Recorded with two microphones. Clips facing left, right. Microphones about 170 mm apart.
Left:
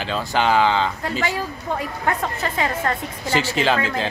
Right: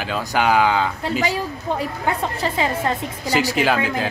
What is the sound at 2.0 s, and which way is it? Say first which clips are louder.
A woman's voice: even; 15° right (ahead or behind).